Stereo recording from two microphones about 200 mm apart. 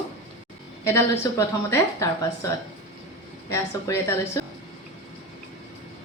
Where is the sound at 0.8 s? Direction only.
15° left (ahead or behind).